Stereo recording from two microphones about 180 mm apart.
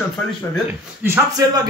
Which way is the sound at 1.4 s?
20° right (ahead or behind).